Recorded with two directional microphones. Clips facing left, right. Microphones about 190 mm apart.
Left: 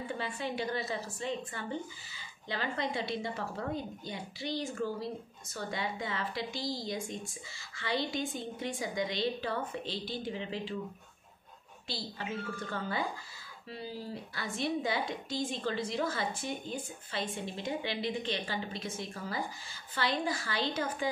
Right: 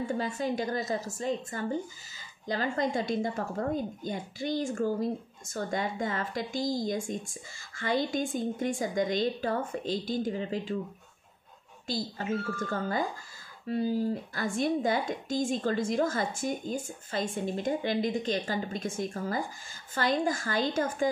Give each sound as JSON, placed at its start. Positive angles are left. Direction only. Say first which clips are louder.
{"t": 0.0, "sound": "a woman's voice", "louder": "right 6 dB", "side_deg": -40}
{"t": 11.9, "sound": "a woman's voice", "louder": "right 7 dB", "side_deg": -45}